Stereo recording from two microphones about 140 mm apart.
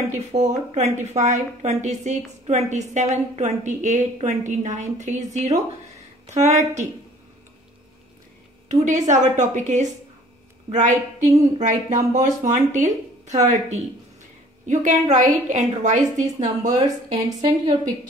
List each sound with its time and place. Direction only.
0.3 s a woman's voice: 55° right (ahead or behind)
8.8 s a woman's voice: 60° right (ahead or behind)
16.3 s a woman's voice: 25° right (ahead or behind)